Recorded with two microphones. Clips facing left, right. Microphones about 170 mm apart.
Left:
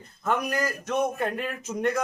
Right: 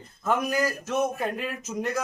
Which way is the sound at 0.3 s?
5° right (ahead or behind).